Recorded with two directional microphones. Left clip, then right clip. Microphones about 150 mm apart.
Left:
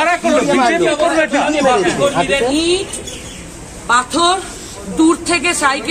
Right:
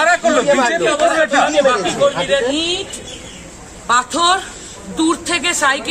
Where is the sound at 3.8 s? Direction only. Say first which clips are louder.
Left 1 dB; 5° right (ahead or behind).